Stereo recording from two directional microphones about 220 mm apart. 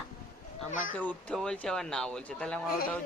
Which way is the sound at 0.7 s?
35° left (ahead or behind).